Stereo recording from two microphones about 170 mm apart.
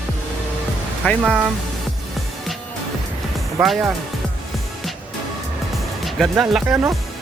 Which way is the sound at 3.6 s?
Centre (ahead or behind).